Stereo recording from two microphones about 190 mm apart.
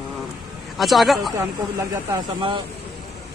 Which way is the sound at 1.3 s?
20° right (ahead or behind).